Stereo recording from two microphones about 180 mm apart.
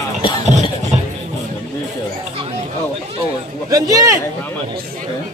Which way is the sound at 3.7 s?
20° right (ahead or behind).